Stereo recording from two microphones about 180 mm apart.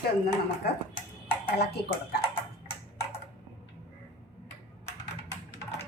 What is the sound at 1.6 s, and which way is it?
Speech, 65° left (ahead or behind).